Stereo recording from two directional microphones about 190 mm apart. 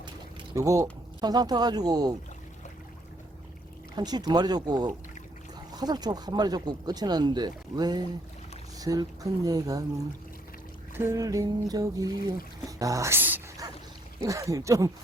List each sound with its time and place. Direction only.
0.5 s speech: 15° right (ahead or behind)
3.9 s speech: 20° right (ahead or behind)
10.9 s speech: 15° right (ahead or behind)
12.6 s dog: 15° right (ahead or behind)
14.2 s speech: 15° right (ahead or behind)